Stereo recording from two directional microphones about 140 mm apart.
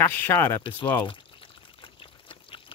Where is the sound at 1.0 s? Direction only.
40° left (ahead or behind).